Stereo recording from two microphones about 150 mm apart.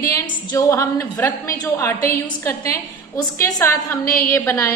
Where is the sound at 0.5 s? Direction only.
20° left (ahead or behind).